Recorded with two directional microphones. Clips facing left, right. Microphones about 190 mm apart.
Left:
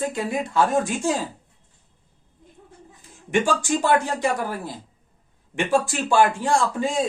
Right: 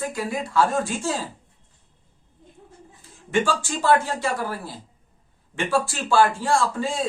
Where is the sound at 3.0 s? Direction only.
15° left (ahead or behind).